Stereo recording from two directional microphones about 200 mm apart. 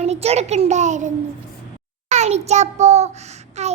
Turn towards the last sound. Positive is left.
turn(degrees=-35)  # may be behind; listen again after turning